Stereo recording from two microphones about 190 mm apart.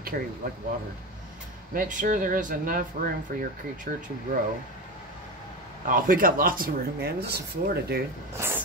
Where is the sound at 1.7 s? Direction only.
45° right (ahead or behind).